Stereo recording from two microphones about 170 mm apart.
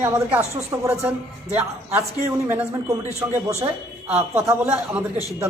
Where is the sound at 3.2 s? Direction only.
5° right (ahead or behind).